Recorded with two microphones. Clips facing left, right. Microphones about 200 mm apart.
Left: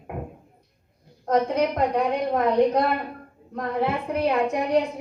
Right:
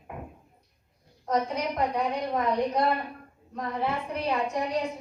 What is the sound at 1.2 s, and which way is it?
A woman's voice, 55° left (ahead or behind).